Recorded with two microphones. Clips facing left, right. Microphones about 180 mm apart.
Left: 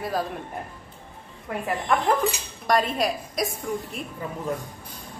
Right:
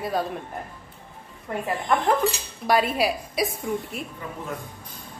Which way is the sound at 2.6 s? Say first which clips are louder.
Right 1 dB; 5° right (ahead or behind).